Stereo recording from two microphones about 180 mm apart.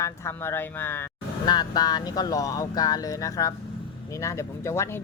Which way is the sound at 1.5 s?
20° left (ahead or behind).